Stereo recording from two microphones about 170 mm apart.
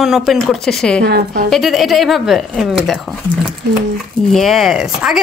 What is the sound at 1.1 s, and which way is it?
Speech, 65° right (ahead or behind).